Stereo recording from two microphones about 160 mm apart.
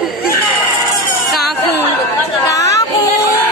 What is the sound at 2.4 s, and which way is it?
Chatter, 20° left (ahead or behind).